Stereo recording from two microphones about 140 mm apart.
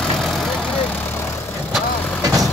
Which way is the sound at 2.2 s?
25° right (ahead or behind).